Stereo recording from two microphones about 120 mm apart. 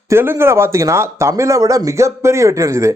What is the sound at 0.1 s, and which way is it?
Speech, 20° right (ahead or behind).